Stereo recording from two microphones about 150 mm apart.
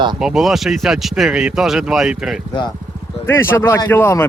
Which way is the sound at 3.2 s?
15° left (ahead or behind).